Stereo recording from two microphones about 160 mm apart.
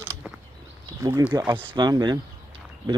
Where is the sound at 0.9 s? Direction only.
20° right (ahead or behind).